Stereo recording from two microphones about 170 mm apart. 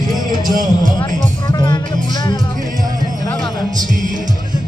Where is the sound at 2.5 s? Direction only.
50° right (ahead or behind).